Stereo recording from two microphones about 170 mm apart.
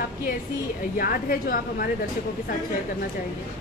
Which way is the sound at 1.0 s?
60° left (ahead or behind).